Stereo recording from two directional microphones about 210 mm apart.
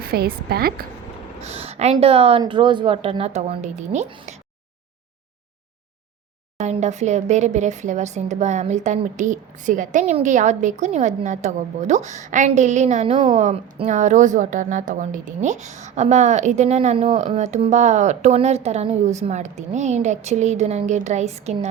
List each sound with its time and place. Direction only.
0.0 s a woman's voice: 45° right (ahead or behind)
1.4 s a woman's voice: 30° right (ahead or behind)
6.6 s a woman's voice: 35° right (ahead or behind)